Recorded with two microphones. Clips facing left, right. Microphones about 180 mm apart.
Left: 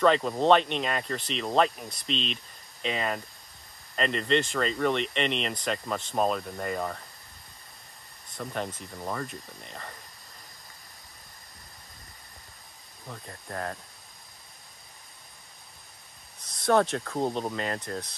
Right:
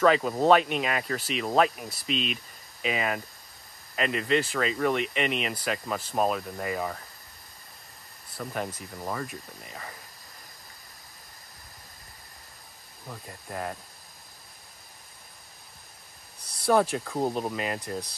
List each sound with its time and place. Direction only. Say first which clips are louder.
0.0 s speech: right 1 dB; 5° right (ahead or behind)
8.3 s speech: even; 5° right (ahead or behind)
13.0 s speech: even; 5° right (ahead or behind)
16.6 s speech: even; 5° right (ahead or behind)